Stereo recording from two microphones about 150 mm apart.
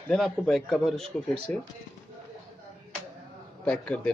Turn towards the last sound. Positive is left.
turn(degrees=10)  # may be behind; listen again after turning